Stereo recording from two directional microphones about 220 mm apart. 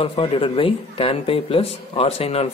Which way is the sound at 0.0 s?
25° left (ahead or behind).